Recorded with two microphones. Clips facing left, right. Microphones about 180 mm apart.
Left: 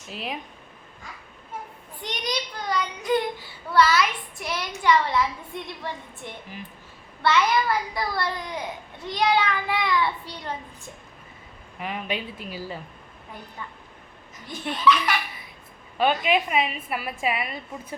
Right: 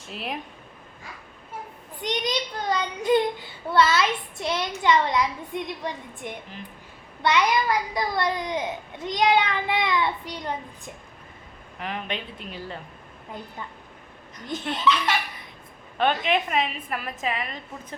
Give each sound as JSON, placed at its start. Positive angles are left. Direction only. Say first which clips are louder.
{"t": 0.1, "sound": "a woman's voice", "louder": "even", "side_deg": 0}
{"t": 2.0, "sound": "a child's voice", "louder": "right 3 dB", "side_deg": -20}
{"t": 11.8, "sound": "a woman's voice", "louder": "left 1 dB", "side_deg": 5}
{"t": 14.4, "sound": "a child's voice", "louder": "left 2 dB", "side_deg": -20}
{"t": 16.0, "sound": "a woman's voice", "louder": "left 1 dB", "side_deg": 5}